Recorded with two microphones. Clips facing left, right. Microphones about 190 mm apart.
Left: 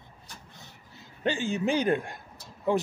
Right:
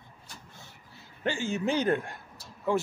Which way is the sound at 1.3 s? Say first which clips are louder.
Left 2 dB; 15° left (ahead or behind).